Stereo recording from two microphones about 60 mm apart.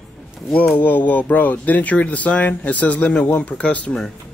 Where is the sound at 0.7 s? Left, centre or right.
Left.